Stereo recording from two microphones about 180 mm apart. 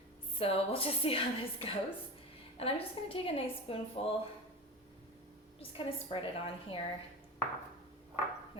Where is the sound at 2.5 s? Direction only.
30° left (ahead or behind).